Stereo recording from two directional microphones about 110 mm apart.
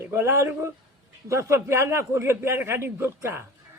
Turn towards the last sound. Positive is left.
turn(degrees=-25)  # may be behind; listen again after turning